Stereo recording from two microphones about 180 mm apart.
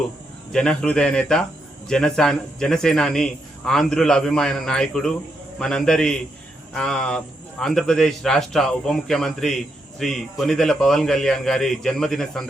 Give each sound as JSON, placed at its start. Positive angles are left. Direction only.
{"t": 0.5, "sound": "a man's voice", "side_deg": 5}